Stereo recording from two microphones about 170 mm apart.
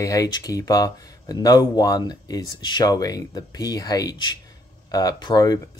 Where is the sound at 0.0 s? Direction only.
20° left (ahead or behind).